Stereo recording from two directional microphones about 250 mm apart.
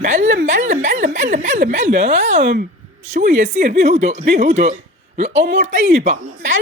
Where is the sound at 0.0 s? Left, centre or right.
Right.